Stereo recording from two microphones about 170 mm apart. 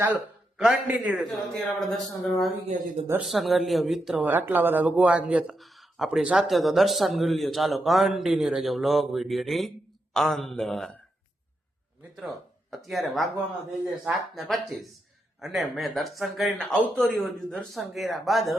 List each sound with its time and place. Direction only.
0.0 s speech: 5° right (ahead or behind)
2.6 s speech: 40° right (ahead or behind)
3.1 s speech: 5° right (ahead or behind)
12.7 s speech: centre (ahead or behind)